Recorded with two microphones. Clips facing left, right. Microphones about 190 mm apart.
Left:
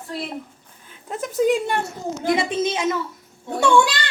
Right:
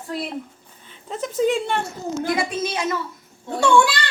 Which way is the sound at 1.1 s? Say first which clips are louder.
Left 1 dB; 5° left (ahead or behind).